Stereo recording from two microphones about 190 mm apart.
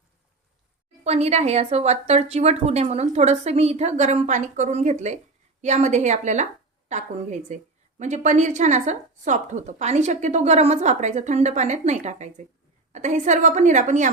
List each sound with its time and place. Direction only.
1.0 s a woman's voice: 35° right (ahead or behind)